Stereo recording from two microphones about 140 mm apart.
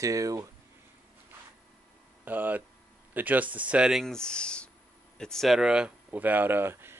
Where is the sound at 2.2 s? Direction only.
10° right (ahead or behind).